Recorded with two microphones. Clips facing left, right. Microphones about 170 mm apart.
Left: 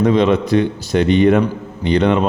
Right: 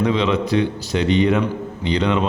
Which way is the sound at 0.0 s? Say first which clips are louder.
Left 5 dB; 50° left (ahead or behind).